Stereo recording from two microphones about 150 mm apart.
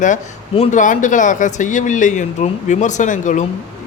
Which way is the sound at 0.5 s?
50° left (ahead or behind).